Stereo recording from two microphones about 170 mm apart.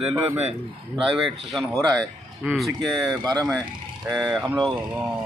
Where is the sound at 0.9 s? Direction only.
Centre (ahead or behind).